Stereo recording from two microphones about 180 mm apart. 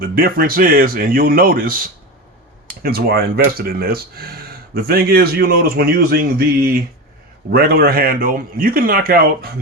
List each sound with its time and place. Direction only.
0.0 s speech: 55° right (ahead or behind)
2.8 s speech: 60° right (ahead or behind)